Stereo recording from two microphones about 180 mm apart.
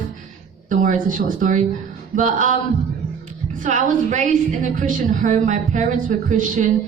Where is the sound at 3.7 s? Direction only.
45° right (ahead or behind).